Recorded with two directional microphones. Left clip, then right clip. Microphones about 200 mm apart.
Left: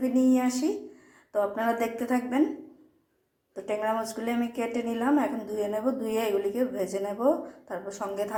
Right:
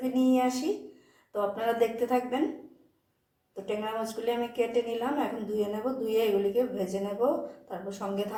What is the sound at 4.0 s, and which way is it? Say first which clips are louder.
Speech: right 1 dB; 25° left (ahead or behind).